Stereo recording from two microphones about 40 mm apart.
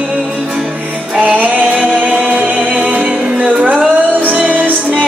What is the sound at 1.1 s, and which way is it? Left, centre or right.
A capella, right.